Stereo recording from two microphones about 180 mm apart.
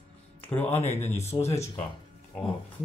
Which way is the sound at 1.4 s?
15° left (ahead or behind).